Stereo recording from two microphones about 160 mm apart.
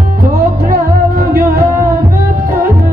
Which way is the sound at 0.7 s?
70° right (ahead or behind).